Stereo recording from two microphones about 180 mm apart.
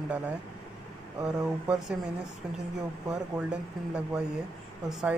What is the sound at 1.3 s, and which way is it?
Speech, 5° right (ahead or behind).